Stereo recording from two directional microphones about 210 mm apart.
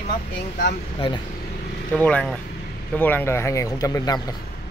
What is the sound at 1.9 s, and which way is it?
Speech, 5° left (ahead or behind).